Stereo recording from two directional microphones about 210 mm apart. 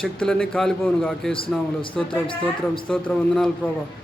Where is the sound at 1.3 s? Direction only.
25° left (ahead or behind).